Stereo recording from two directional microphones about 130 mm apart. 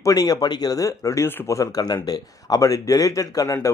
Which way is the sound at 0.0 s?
30° left (ahead or behind).